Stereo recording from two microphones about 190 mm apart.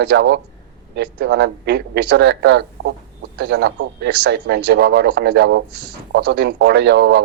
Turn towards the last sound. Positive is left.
turn(degrees=-60)  # may be behind; listen again after turning